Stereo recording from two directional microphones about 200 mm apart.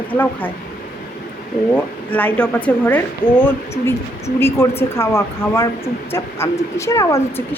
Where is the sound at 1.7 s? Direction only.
5° left (ahead or behind).